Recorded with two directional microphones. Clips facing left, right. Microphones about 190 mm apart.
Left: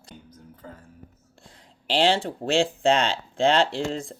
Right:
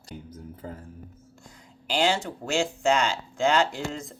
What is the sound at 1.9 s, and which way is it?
Speech, 30° left (ahead or behind).